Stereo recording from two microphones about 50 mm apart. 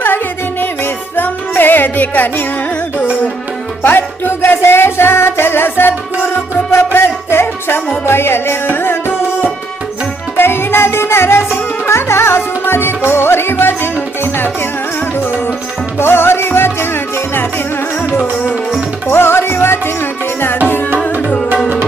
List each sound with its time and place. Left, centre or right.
1.1 s music: left
3.8 s music: left
16.0 s music: left
19.0 s music: left
21.2 s music: left